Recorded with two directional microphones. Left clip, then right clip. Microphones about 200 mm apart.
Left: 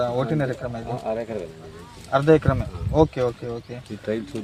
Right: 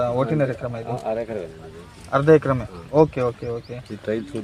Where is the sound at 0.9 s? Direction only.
Centre (ahead or behind).